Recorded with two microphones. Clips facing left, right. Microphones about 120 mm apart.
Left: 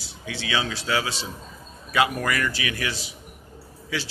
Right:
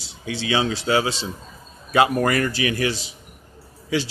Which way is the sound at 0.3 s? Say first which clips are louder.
Right 5 dB; 30° right (ahead or behind).